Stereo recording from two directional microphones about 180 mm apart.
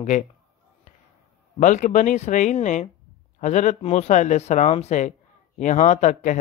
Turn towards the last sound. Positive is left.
turn(degrees=45)  # may be behind; listen again after turning